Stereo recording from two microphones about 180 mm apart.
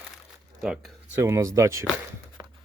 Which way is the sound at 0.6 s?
5° right (ahead or behind).